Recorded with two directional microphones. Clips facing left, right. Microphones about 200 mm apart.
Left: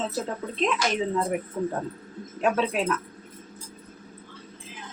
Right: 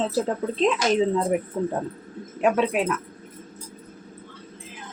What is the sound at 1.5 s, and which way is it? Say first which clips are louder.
Speech: right 2 dB; 25° right (ahead or behind).